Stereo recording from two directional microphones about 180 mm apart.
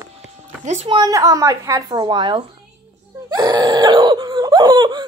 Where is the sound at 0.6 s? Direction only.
30° right (ahead or behind).